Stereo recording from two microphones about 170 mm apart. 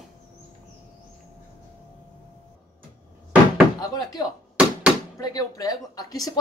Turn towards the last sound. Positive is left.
turn(degrees=20)  # may be behind; listen again after turning